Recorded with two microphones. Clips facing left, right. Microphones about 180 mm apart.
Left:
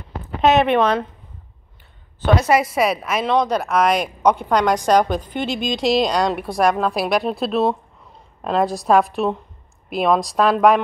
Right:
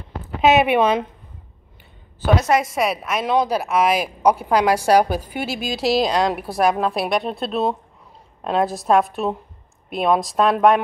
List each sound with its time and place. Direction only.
0.4 s a woman's voice: 5° right (ahead or behind)
2.1 s a woman's voice: 5° right (ahead or behind)